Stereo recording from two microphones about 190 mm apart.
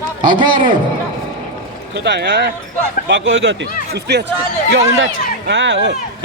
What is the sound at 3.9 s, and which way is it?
Speech, 60° right (ahead or behind).